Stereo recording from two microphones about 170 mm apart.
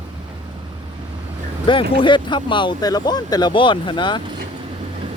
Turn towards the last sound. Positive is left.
turn(degrees=25)  # may be behind; listen again after turning